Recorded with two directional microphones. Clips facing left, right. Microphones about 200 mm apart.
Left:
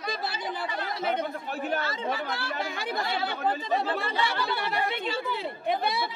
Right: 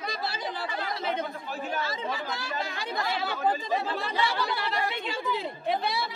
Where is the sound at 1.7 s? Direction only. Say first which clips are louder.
Left 2 dB; 60° left (ahead or behind).